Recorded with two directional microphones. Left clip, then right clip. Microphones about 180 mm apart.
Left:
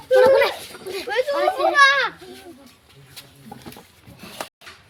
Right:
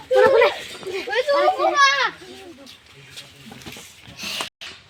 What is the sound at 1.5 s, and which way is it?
Children playing, 5° left (ahead or behind).